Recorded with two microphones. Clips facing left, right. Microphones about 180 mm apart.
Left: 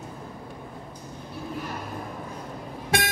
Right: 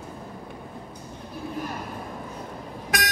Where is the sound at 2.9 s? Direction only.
25° left (ahead or behind).